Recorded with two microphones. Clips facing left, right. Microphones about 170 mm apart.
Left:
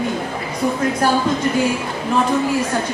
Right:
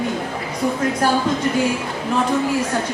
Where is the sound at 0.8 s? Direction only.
15° left (ahead or behind).